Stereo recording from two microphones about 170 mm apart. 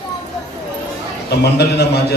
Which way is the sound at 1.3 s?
75° left (ahead or behind).